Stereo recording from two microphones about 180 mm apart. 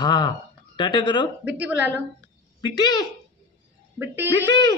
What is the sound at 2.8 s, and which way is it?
Speech, 25° left (ahead or behind).